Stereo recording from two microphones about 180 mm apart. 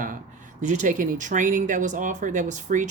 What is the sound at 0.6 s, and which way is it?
Speech, 40° right (ahead or behind).